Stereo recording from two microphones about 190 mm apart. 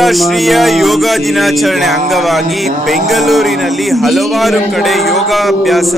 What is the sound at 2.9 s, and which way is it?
A man's voice, centre (ahead or behind).